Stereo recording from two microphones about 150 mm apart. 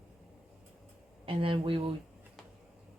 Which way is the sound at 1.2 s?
35° right (ahead or behind).